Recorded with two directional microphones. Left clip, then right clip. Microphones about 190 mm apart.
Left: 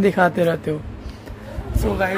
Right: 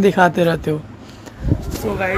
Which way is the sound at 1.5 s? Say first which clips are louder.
Right 12 dB; 15° left (ahead or behind).